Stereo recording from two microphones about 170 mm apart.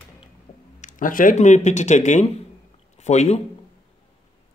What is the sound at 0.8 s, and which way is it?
Speech, 55° left (ahead or behind).